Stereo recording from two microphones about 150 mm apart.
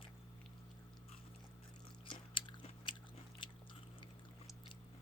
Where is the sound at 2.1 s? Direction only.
35° left (ahead or behind).